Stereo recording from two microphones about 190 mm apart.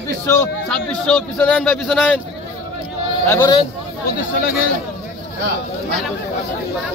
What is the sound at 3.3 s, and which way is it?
Speech, 15° left (ahead or behind).